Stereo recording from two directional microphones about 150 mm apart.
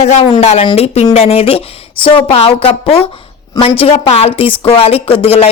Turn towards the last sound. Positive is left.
turn(degrees=40)  # may be behind; listen again after turning